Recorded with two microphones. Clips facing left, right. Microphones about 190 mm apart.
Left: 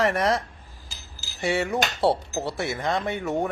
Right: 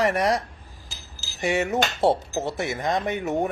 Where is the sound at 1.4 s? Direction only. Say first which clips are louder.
Right 1 dB; 20° right (ahead or behind).